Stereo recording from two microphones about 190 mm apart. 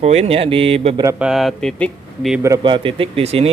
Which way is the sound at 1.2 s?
Centre (ahead or behind).